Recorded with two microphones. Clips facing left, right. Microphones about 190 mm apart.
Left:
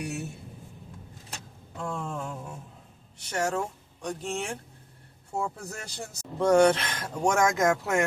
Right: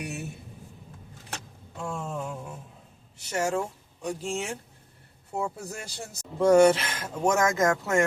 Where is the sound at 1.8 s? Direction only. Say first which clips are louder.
Even; 5° right (ahead or behind).